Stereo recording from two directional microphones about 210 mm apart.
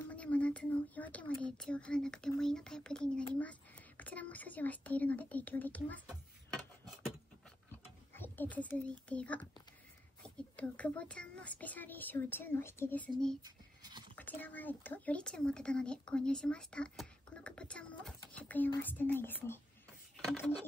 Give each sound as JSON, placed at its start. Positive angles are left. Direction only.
{"t": 0.1, "sound": "speech", "side_deg": 5}
{"t": 8.1, "sound": "a child's voice", "side_deg": 10}
{"t": 13.4, "sound": "scratch", "side_deg": -20}
{"t": 14.1, "sound": "a child's voice", "side_deg": 10}